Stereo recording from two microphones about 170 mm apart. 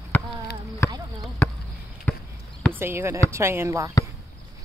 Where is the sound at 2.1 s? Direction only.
10° left (ahead or behind).